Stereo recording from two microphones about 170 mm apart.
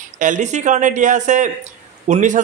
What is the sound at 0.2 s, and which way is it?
A man's voice, 45° right (ahead or behind).